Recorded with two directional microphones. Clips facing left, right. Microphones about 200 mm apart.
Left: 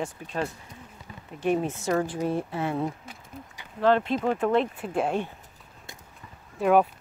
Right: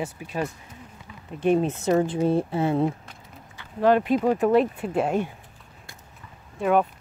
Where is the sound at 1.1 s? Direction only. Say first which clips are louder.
Left 4 dB; 40° left (ahead or behind).